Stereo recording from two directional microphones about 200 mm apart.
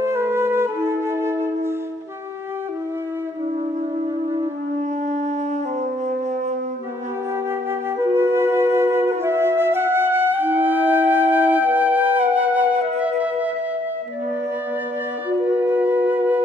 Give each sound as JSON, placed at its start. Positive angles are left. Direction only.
{"t": 0.0, "sound": "flute", "side_deg": -10}
{"t": 8.0, "sound": "flute", "side_deg": -10}
{"t": 15.6, "sound": "flute", "side_deg": -10}